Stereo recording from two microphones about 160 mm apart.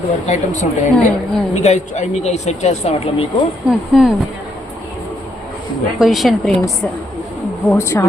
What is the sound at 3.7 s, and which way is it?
Speech, centre (ahead or behind).